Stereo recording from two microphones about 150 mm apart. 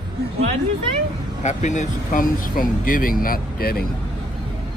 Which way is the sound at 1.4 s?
50° left (ahead or behind).